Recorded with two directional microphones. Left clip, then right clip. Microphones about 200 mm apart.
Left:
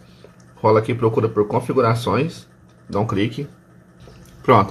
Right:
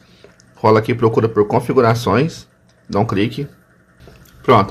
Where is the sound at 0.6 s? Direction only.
20° right (ahead or behind).